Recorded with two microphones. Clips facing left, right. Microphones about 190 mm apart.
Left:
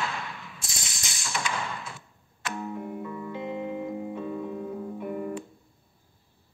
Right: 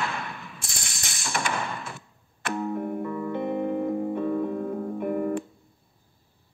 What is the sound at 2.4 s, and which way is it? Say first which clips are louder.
Music: right 6 dB; 60° right (ahead or behind).